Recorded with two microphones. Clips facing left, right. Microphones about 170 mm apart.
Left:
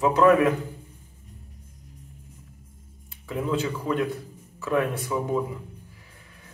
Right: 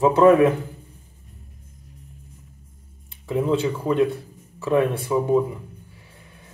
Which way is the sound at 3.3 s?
25° right (ahead or behind).